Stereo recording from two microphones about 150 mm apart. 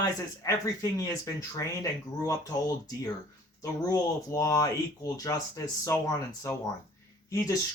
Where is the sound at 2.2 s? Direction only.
20° left (ahead or behind).